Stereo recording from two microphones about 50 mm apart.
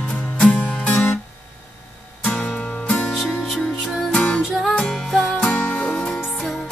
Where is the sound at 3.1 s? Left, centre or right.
Centre.